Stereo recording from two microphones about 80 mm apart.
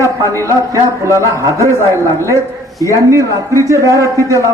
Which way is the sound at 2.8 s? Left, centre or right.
Right.